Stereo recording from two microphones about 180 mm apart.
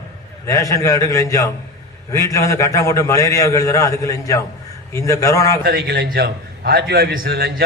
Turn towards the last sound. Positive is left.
turn(degrees=-60)  # may be behind; listen again after turning